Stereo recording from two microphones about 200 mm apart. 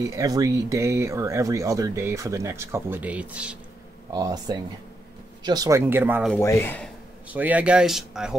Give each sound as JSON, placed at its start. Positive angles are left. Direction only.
{"t": 0.0, "sound": "speech", "side_deg": -15}
{"t": 4.1, "sound": "speech", "side_deg": -20}
{"t": 6.3, "sound": "speech", "side_deg": 10}
{"t": 7.2, "sound": "speech", "side_deg": -5}